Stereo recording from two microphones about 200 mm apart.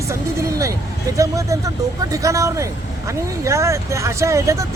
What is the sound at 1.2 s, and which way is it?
Speech, 15° right (ahead or behind).